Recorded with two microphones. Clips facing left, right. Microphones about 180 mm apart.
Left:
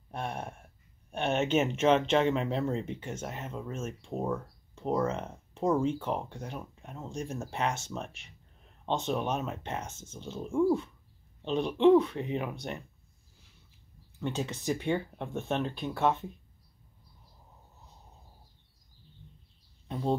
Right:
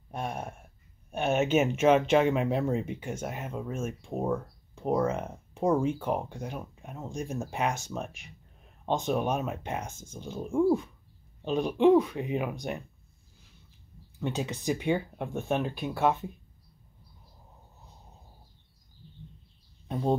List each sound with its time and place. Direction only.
0.1 s a sound: 5° right (ahead or behind)
1.1 s speech: 5° right (ahead or behind)
14.2 s speech: 10° right (ahead or behind)